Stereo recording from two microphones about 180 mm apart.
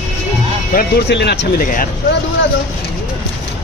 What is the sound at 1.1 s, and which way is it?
Speech, 70° left (ahead or behind).